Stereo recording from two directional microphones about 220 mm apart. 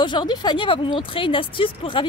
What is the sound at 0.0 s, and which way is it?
Speech, 20° left (ahead or behind).